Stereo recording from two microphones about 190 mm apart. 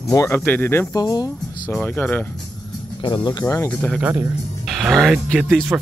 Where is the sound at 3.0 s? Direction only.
25° left (ahead or behind).